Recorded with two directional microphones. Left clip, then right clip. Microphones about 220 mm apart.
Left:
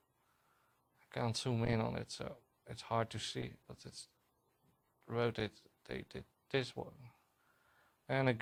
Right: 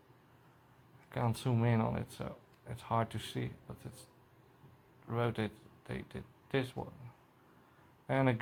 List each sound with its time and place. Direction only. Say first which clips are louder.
1.1 s speech: right 2 dB; 50° left (ahead or behind)
5.0 s speech: right 1 dB; 50° left (ahead or behind)
8.0 s speech: right 3 dB; 50° left (ahead or behind)